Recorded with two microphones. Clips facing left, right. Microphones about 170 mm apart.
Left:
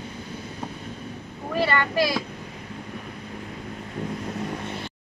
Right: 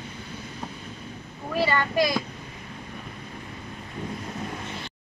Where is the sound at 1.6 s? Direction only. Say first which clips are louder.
Even; 15° right (ahead or behind).